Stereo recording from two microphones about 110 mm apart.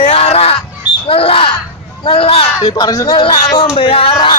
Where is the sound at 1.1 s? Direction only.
60° left (ahead or behind).